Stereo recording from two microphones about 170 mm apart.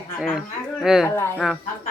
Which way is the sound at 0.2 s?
Centre (ahead or behind).